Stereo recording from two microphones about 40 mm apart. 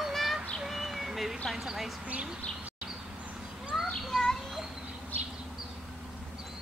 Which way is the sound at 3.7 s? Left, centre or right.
Centre.